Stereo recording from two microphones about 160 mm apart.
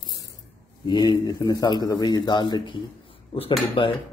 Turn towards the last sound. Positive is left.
turn(degrees=30)  # may be behind; listen again after turning